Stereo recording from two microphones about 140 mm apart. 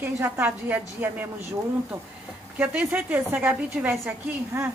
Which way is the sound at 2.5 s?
10° right (ahead or behind).